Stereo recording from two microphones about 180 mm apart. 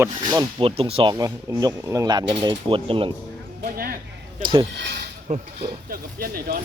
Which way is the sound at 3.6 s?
55° right (ahead or behind).